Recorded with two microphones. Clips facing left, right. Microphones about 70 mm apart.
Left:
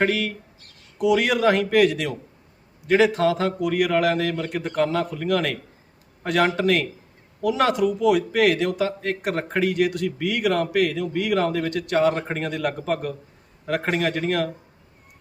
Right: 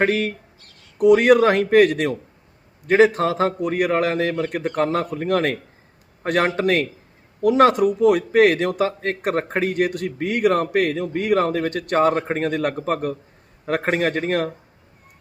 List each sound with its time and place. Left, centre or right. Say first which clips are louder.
0.0 s a man's voice: right 3 dB; right